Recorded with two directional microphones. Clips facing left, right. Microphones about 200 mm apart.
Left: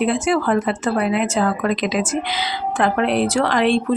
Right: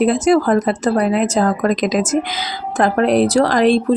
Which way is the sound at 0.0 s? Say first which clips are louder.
Right 5 dB; 40° right (ahead or behind).